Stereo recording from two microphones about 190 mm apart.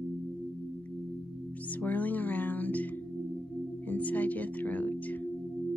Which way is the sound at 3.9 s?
10° left (ahead or behind).